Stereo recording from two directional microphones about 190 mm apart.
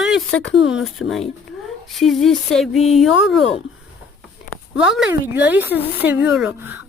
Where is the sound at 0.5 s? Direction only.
Centre (ahead or behind).